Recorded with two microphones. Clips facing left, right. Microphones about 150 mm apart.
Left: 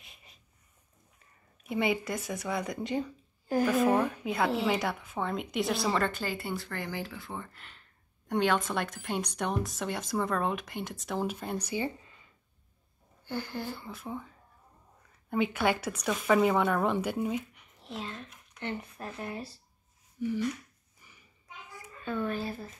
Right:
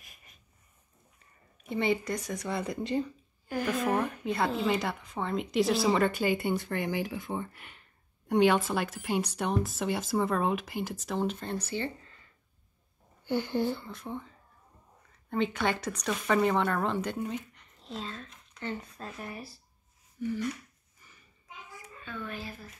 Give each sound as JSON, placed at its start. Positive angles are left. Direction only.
{"t": 1.7, "sound": "speech", "side_deg": 5}
{"t": 4.2, "sound": "a woman's voice", "side_deg": 0}
{"t": 13.2, "sound": "speech", "side_deg": -20}
{"t": 13.7, "sound": "speech", "side_deg": 5}
{"t": 21.0, "sound": "a sound", "side_deg": 15}
{"t": 22.0, "sound": "speech", "side_deg": 40}